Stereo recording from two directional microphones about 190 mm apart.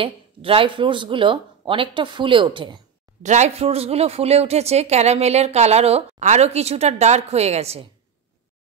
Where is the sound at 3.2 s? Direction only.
40° right (ahead or behind).